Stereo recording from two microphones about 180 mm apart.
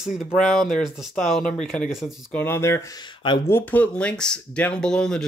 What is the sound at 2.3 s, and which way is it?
Speech, 10° left (ahead or behind).